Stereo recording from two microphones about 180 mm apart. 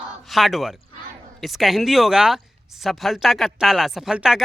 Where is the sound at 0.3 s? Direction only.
Centre (ahead or behind).